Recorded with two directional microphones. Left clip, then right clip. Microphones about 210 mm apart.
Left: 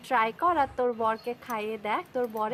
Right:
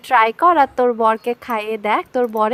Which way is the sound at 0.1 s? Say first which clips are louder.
Right 12 dB; 50° right (ahead or behind).